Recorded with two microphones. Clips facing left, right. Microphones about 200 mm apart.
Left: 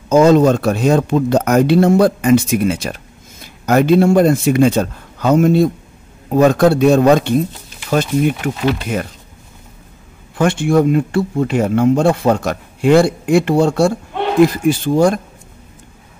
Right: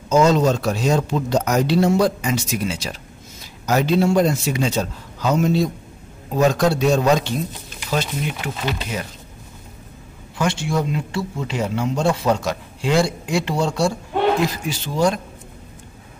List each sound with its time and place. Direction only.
0.1 s speech: 55° left (ahead or behind)
10.3 s speech: 55° left (ahead or behind)